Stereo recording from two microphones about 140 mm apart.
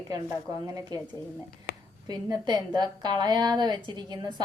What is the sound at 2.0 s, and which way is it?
A woman's voice, 30° right (ahead or behind).